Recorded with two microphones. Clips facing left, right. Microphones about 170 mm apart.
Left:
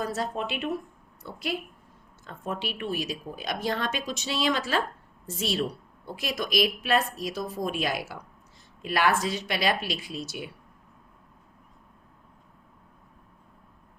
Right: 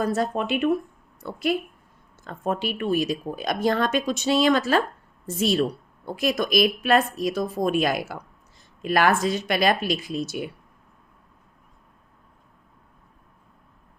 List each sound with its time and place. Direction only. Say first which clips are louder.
0.0 s speech: right 6 dB; 50° right (ahead or behind)